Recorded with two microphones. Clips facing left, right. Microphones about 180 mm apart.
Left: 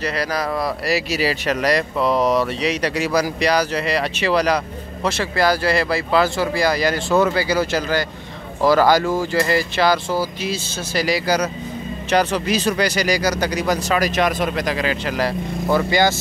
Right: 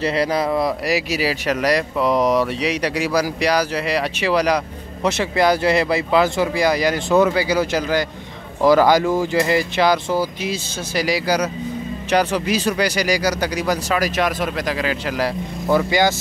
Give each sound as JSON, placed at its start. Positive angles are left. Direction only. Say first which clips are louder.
{"t": 0.0, "sound": "speech", "louder": "right 4 dB", "side_deg": -25}